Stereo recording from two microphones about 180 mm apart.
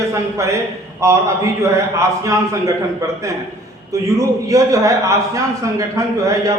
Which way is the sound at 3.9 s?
20° right (ahead or behind).